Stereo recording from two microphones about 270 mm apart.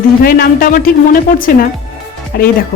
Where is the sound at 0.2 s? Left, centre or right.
Left.